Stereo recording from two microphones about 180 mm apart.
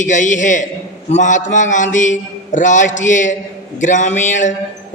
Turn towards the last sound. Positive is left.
turn(degrees=45)  # may be behind; listen again after turning